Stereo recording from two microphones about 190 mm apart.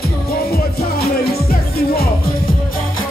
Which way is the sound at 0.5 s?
55° left (ahead or behind).